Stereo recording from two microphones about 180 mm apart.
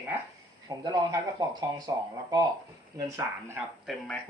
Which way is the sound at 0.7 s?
20° right (ahead or behind).